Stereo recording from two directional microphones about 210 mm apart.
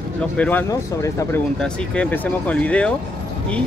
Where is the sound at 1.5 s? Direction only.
5° left (ahead or behind).